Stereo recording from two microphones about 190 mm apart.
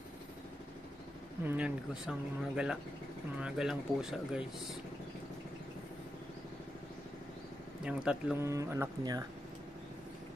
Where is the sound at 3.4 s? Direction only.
Centre (ahead or behind).